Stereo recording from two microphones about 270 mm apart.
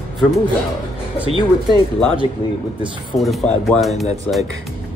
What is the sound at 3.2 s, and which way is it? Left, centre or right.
Speech, centre.